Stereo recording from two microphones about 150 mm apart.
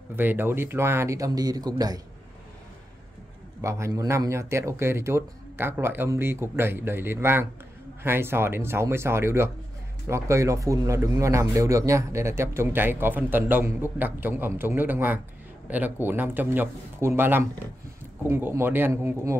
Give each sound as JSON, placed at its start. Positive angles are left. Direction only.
{"t": 0.1, "sound": "speech", "side_deg": -15}
{"t": 3.6, "sound": "speech", "side_deg": -20}